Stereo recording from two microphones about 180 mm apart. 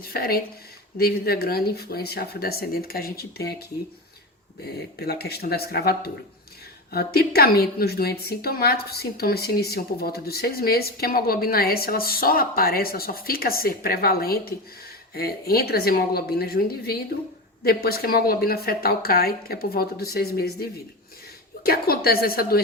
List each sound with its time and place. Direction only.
0.0 s a woman's voice: 55° left (ahead or behind)
4.9 s a woman's voice: 60° left (ahead or behind)